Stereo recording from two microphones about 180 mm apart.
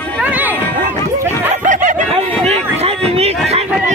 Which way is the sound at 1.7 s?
45° right (ahead or behind).